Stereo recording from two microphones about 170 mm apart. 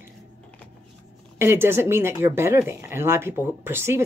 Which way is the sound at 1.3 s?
15° right (ahead or behind).